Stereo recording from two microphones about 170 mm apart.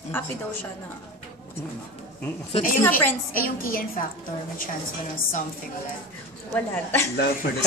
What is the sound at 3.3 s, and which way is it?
Speech, 55° left (ahead or behind).